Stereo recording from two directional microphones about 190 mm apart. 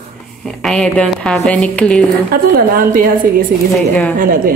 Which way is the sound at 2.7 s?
50° right (ahead or behind).